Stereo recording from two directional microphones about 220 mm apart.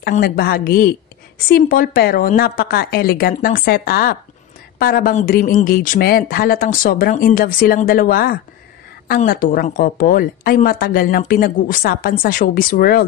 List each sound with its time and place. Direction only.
0.0 s a woman's voice: 45° left (ahead or behind)